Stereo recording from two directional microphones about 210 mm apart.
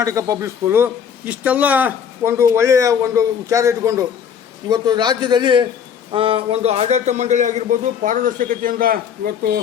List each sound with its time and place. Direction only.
0.0 s a man's voice: 15° right (ahead or behind); by 9.6 s 45° right (ahead or behind)